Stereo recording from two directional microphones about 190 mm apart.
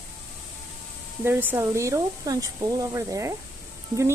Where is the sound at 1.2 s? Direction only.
10° right (ahead or behind).